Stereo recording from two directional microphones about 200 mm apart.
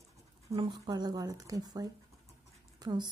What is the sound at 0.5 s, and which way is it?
Speech, 25° right (ahead or behind).